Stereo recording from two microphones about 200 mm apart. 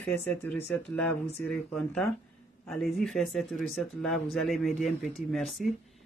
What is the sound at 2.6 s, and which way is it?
Speech, centre (ahead or behind).